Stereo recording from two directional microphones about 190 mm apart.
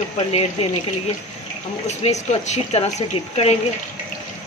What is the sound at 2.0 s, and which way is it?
Speech, 35° left (ahead or behind).